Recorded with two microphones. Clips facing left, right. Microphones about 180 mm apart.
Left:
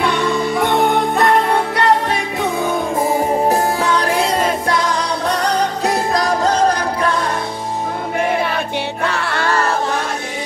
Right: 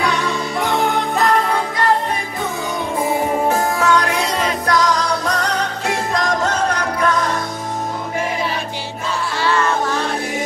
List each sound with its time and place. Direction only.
0.0 s music: centre (ahead or behind)
1.8 s music: 75° left (ahead or behind)
3.0 s music: 35° left (ahead or behind)
5.4 s music: 35° left (ahead or behind)
9.0 s music: 65° left (ahead or behind)
9.5 s music: 40° left (ahead or behind)